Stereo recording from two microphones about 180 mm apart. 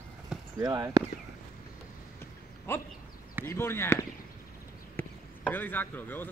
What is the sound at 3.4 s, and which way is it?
Speech, 15° left (ahead or behind).